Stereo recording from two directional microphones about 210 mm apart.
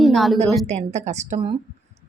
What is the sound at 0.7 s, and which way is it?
Speech, 30° right (ahead or behind).